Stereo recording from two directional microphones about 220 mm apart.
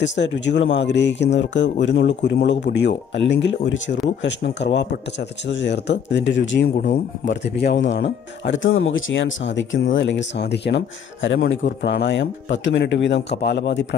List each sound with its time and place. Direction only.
0.0 s a man's voice: 55° left (ahead or behind)